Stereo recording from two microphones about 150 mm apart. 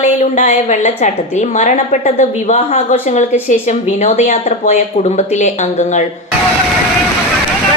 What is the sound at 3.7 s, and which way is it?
A woman's voice, 55° left (ahead or behind).